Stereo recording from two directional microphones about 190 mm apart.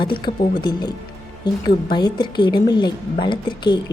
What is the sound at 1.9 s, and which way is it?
A woman's voice, 25° left (ahead or behind).